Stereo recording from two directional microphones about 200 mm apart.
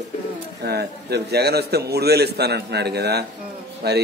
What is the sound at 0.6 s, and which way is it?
A man's voice, 55° right (ahead or behind).